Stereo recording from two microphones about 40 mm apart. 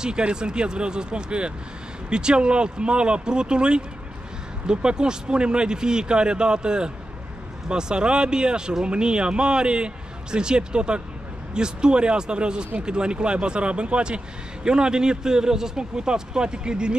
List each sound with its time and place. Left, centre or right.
0.0 s speech: right